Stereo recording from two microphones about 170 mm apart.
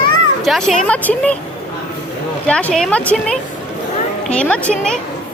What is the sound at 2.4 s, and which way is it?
A woman's voice, 5° left (ahead or behind).